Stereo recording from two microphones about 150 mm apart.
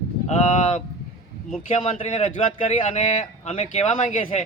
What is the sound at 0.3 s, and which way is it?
A man's voice, 45° left (ahead or behind).